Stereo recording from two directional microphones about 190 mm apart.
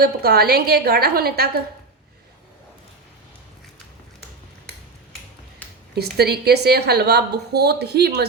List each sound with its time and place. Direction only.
0.0 s a woman's voice: 55° right (ahead or behind)
5.9 s a woman's voice: 55° right (ahead or behind)